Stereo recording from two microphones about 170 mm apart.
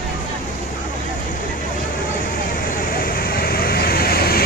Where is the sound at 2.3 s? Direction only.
55° left (ahead or behind).